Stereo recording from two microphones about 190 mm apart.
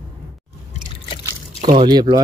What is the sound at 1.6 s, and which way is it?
Speech, 20° right (ahead or behind).